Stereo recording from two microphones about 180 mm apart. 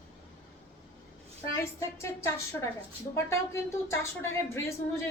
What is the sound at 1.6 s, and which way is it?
Speech, 15° left (ahead or behind).